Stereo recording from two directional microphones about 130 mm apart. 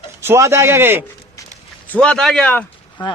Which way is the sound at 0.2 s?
20° right (ahead or behind).